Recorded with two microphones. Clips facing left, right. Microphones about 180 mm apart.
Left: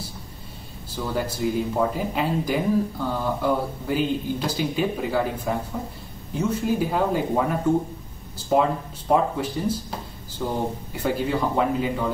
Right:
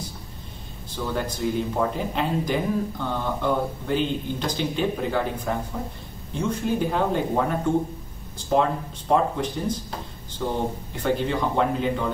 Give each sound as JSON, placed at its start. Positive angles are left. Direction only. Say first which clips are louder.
{"t": 0.9, "sound": "speech", "louder": "left 1 dB", "side_deg": 5}